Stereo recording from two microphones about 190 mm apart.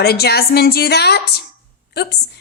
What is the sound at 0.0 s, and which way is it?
A woman's voice, 55° left (ahead or behind).